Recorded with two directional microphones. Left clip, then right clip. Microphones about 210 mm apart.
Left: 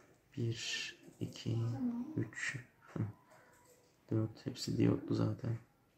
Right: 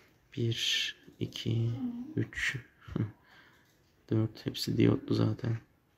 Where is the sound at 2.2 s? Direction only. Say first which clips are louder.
Right 11 dB; 40° right (ahead or behind).